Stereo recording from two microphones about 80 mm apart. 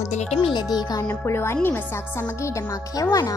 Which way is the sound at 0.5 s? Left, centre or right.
Left.